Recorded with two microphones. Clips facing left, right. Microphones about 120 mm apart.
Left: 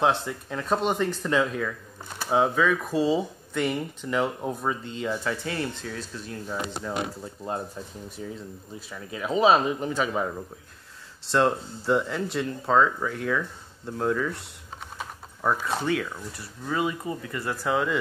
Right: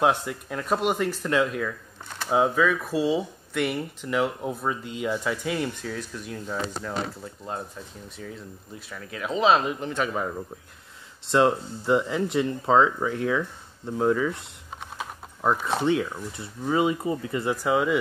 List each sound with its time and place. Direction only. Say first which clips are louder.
0.0 s speech: right 1 dB; 10° right (ahead or behind)
2.0 s a sound: right 1 dB; 5° left (ahead or behind)
2.3 s speech: even; centre (ahead or behind)
6.3 s speech: right 1 dB; 10° left (ahead or behind)
8.2 s speech: left 2 dB; 25° left (ahead or behind)
9.2 s speech: left 1 dB; 5° left (ahead or behind)
11.3 s speech: right 2 dB; 15° right (ahead or behind)
15.4 s speech: right 3 dB; 20° right (ahead or behind)